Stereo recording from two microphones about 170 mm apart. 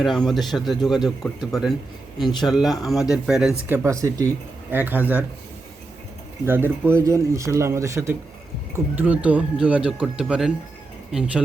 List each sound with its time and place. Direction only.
0.0 s speech: centre (ahead or behind)
3.7 s speech: 15° right (ahead or behind)
6.4 s speech: 15° right (ahead or behind)